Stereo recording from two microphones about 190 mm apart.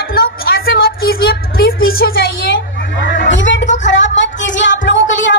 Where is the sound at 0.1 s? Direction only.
50° left (ahead or behind).